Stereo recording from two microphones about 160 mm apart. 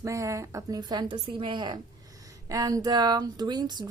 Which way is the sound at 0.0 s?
20° right (ahead or behind).